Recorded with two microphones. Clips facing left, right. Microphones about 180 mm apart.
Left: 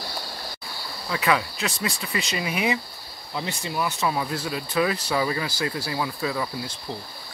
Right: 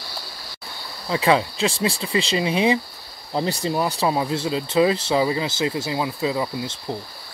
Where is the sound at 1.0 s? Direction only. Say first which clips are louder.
Right 5 dB; 30° right (ahead or behind).